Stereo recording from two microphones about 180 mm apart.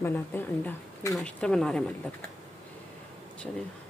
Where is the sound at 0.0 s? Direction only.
10° left (ahead or behind).